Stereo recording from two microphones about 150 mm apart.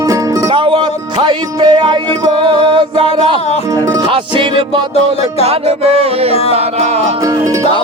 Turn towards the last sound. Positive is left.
turn(degrees=-20)  # may be behind; listen again after turning